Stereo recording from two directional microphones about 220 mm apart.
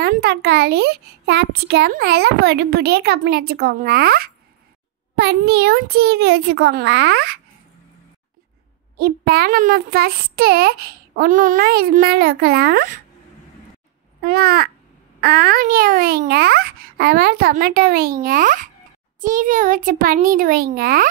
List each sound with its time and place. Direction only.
0.0 s a child's voice: 45° right (ahead or behind)
8.9 s a child's voice: 45° right (ahead or behind)
14.2 s a child's voice: 45° right (ahead or behind)